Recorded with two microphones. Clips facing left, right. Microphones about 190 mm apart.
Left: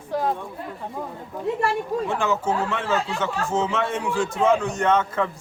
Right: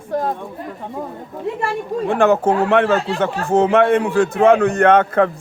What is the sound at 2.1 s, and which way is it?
A man's voice, 60° right (ahead or behind).